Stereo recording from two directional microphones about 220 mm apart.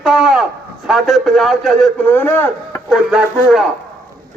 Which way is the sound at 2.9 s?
Centre (ahead or behind).